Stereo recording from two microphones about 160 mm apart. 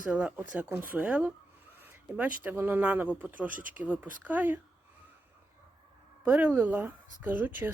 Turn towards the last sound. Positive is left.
turn(degrees=-10)  # may be behind; listen again after turning